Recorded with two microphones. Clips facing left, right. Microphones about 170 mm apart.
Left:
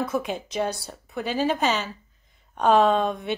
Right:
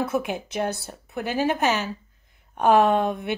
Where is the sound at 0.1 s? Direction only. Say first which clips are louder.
Right 1 dB; 10° right (ahead or behind).